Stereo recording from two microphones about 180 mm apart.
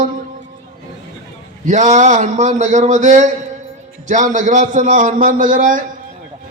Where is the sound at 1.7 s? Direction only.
40° right (ahead or behind).